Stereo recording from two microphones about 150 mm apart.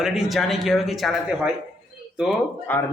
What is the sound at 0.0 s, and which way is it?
A man's voice, centre (ahead or behind).